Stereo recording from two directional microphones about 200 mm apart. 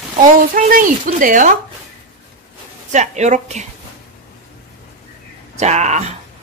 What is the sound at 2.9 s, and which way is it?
Speech, 35° right (ahead or behind).